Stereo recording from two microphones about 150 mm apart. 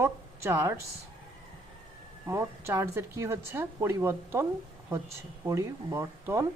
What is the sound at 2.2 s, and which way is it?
Speech, 15° right (ahead or behind).